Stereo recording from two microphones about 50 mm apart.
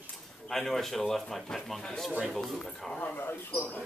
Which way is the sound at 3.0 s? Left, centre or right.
Left.